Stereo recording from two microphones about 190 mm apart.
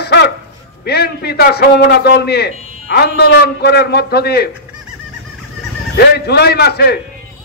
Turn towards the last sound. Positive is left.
turn(degrees=55)  # may be behind; listen again after turning